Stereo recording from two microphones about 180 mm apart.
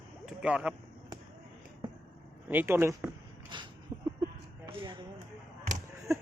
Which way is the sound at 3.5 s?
25° right (ahead or behind).